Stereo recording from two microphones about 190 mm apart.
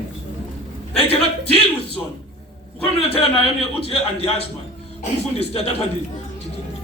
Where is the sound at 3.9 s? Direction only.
30° left (ahead or behind).